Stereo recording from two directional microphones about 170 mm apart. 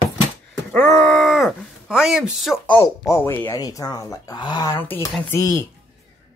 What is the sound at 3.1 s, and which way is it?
Speech, 15° left (ahead or behind).